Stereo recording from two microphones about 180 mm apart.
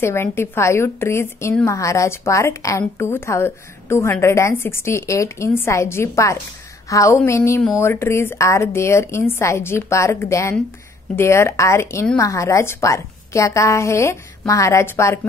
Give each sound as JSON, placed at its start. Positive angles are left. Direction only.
{"t": 0.0, "sound": "a woman's voice", "side_deg": 15}